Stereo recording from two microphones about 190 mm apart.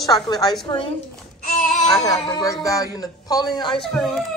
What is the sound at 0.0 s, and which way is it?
Speech, 20° left (ahead or behind).